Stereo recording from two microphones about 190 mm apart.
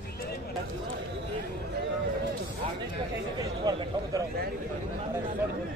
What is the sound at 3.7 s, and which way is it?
Speech, 20° right (ahead or behind).